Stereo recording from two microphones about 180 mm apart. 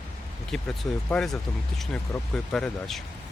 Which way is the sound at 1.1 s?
5° left (ahead or behind).